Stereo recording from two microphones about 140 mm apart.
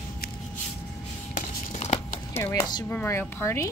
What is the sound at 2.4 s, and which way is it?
Speech, 25° left (ahead or behind).